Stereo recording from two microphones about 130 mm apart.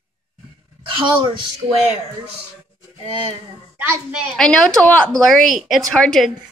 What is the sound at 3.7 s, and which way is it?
Speech, 15° right (ahead or behind).